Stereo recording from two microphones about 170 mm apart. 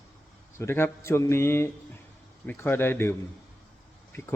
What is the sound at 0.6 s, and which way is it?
A man's voice, 15° left (ahead or behind).